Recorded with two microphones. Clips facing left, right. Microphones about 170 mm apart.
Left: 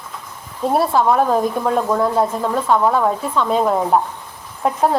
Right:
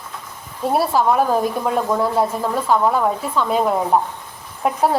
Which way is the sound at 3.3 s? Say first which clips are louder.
Left 1 dB; 5° right (ahead or behind).